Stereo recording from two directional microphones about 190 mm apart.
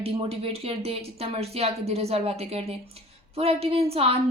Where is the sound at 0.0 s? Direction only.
30° right (ahead or behind).